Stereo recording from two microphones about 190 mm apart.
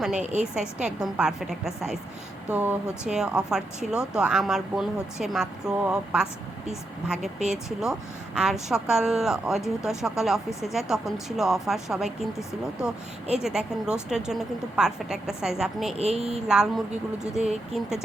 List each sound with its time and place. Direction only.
0.0 s speech: 5° right (ahead or behind)
7.4 s speech: 5° right (ahead or behind)
13.4 s speech: 5° right (ahead or behind)